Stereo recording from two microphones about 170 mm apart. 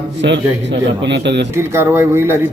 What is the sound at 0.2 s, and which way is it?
A man's voice, 90° right.